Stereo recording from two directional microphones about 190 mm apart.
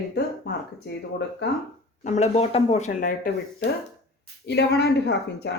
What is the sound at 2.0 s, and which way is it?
Speech, 35° left (ahead or behind).